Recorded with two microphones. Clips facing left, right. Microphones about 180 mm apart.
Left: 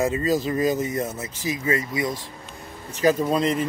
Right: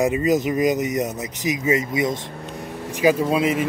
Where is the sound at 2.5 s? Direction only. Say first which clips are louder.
Right 10 dB; 75° right (ahead or behind).